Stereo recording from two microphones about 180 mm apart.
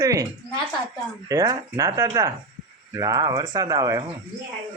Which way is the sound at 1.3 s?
20° right (ahead or behind).